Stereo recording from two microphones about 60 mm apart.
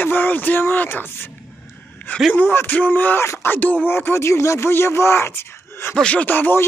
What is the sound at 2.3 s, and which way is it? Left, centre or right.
Speech, left.